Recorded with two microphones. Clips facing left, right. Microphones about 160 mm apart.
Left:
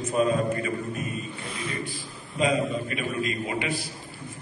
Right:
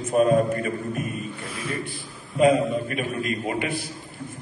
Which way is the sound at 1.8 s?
55° right (ahead or behind).